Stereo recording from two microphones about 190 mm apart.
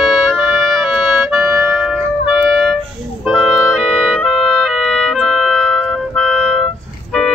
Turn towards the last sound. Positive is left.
turn(degrees=5)  # may be behind; listen again after turning